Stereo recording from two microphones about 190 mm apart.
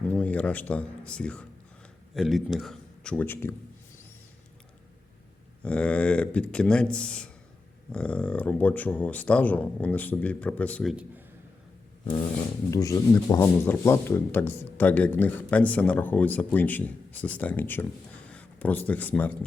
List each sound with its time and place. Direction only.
0.1 s speech: 5° left (ahead or behind)
5.6 s speech: 5° left (ahead or behind)
12.7 s speech: 15° left (ahead or behind)